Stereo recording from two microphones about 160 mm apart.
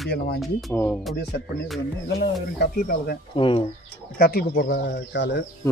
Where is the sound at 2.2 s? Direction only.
80° left.